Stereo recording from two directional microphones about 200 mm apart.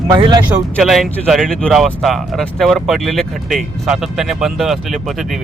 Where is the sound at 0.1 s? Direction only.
20° right (ahead or behind).